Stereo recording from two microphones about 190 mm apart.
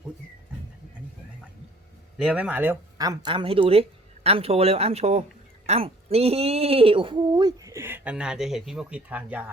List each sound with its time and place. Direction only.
2.1 s speech: 5° right (ahead or behind)